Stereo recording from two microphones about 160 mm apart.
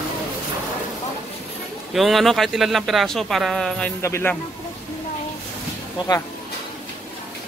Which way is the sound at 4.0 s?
15° left (ahead or behind).